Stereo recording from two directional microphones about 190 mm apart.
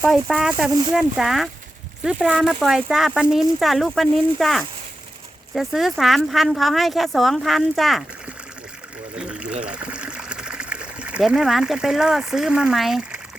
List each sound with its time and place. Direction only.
0.0 s speech: centre (ahead or behind)
0.7 s speech: 20° right (ahead or behind)
0.9 s speech: centre (ahead or behind)
9.1 s speech: 5° right (ahead or behind)